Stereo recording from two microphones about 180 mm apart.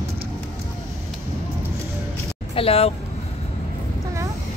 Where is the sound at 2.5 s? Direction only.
35° left (ahead or behind).